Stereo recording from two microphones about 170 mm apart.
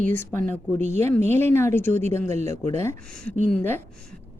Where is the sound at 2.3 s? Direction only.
40° right (ahead or behind).